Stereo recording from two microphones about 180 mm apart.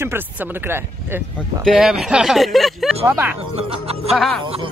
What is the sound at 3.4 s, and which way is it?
Speech, 35° right (ahead or behind).